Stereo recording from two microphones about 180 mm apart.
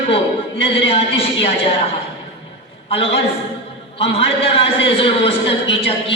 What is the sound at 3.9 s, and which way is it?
A man's voice, 35° left (ahead or behind).